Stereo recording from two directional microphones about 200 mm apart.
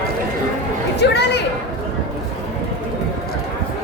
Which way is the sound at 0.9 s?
55° left (ahead or behind).